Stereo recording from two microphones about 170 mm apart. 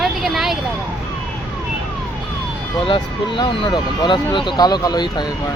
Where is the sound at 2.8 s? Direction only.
30° left (ahead or behind).